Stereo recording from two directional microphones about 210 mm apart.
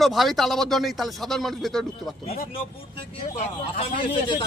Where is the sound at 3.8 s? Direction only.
25° left (ahead or behind).